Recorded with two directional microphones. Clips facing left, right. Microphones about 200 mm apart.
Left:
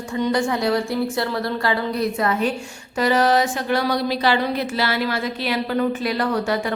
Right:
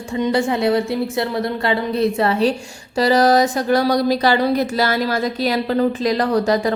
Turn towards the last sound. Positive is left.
turn(degrees=-35)  # may be behind; listen again after turning